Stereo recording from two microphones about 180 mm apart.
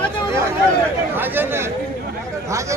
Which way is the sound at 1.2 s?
10° right (ahead or behind).